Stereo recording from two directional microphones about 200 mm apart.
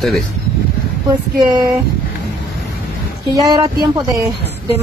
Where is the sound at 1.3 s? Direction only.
20° right (ahead or behind).